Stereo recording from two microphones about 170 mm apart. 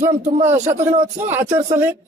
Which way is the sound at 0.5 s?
45° right (ahead or behind).